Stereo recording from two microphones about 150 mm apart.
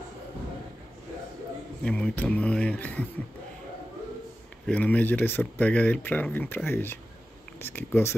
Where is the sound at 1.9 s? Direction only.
5° left (ahead or behind).